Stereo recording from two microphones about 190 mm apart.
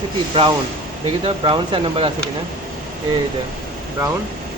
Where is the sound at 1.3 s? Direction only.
25° right (ahead or behind).